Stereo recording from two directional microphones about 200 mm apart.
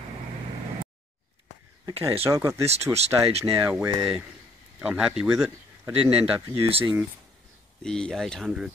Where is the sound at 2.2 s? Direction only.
15° right (ahead or behind).